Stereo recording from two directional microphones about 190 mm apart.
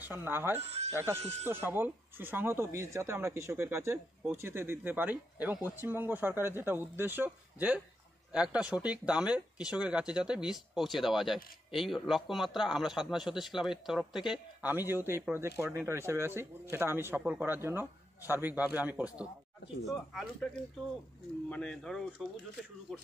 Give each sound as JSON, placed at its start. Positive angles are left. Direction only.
{"t": 0.0, "sound": "speech", "side_deg": -10}
{"t": 0.6, "sound": "speech", "side_deg": -35}
{"t": 0.8, "sound": "speech", "side_deg": -15}
{"t": 21.5, "sound": "speech", "side_deg": 5}